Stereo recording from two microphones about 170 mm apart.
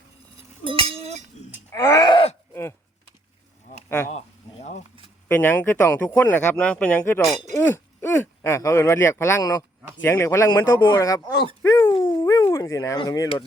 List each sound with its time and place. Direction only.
0.6 s chink: 30° right (ahead or behind)
1.7 s groan: 20° left (ahead or behind)
5.3 s speech: 10° left (ahead or behind)
10.9 s groan: 20° left (ahead or behind)
11.6 s dog: 15° left (ahead or behind)
11.9 s dog: 30° left (ahead or behind)
12.2 s dog: 20° left (ahead or behind)